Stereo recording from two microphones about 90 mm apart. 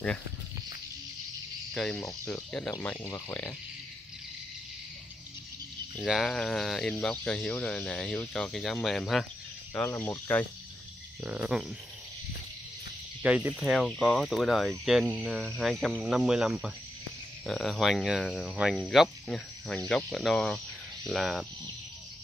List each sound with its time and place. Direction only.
1.7 s speech: 5° left (ahead or behind)
3.0 s speech: 35° left (ahead or behind)
6.0 s speech: centre (ahead or behind)
9.9 s speech: 20° left (ahead or behind)
11.2 s speech: 5° right (ahead or behind)
13.2 s speech: 15° right (ahead or behind)
13.6 s speech: centre (ahead or behind)